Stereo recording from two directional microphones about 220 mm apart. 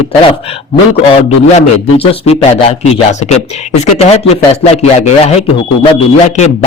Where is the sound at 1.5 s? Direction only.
30° left (ahead or behind).